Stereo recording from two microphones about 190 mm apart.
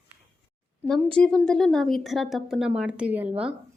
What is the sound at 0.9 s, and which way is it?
A woman's voice, 5° left (ahead or behind).